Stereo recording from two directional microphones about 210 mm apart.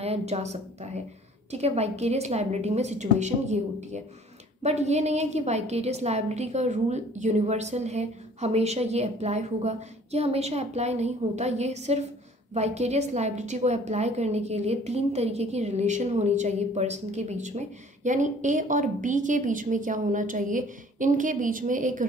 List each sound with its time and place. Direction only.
0.0 s a woman's voice: 30° right (ahead or behind)